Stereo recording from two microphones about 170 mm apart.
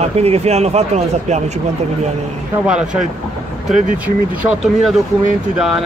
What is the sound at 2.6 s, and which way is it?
Speech, 5° right (ahead or behind).